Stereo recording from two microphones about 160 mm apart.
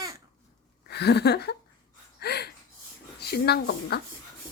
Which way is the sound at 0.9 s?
90° left.